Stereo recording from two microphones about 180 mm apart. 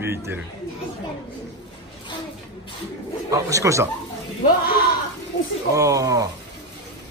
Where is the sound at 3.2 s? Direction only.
20° right (ahead or behind).